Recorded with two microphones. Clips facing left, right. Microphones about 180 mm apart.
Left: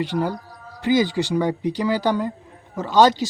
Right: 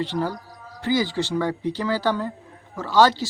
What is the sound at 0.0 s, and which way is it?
Speech, 15° left (ahead or behind).